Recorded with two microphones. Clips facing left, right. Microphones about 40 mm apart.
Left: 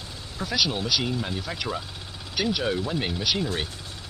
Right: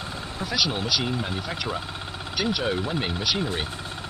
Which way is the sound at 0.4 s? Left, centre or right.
Centre.